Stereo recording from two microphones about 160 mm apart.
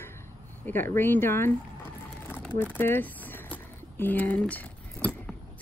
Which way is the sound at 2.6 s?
15° left (ahead or behind).